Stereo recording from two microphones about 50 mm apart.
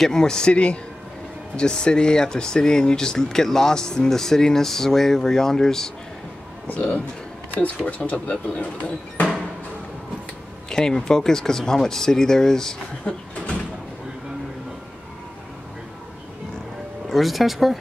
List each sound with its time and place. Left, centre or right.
0.0 s speech: centre
6.7 s speech: left
10.7 s speech: centre
13.0 s speech: left
17.1 s speech: centre